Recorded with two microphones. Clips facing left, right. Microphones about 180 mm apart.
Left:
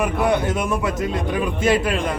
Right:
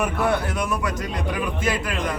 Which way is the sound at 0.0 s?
15° left (ahead or behind).